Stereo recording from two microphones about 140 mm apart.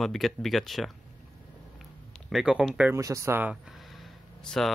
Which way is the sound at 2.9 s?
20° right (ahead or behind).